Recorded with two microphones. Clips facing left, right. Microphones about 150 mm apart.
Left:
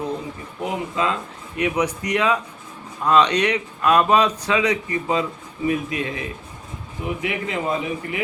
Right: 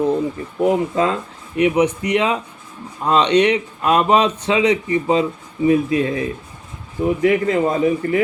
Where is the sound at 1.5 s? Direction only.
25° right (ahead or behind).